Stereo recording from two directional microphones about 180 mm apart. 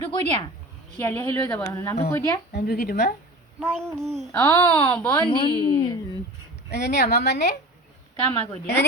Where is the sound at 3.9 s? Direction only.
Centre (ahead or behind).